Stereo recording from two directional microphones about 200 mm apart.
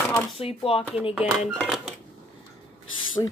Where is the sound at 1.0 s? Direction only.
5° right (ahead or behind).